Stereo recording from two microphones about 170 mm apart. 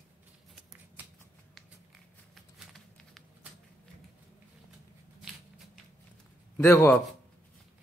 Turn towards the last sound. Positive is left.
turn(degrees=15)  # may be behind; listen again after turning